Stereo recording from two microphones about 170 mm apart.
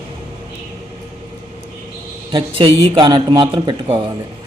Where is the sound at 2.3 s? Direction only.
30° right (ahead or behind).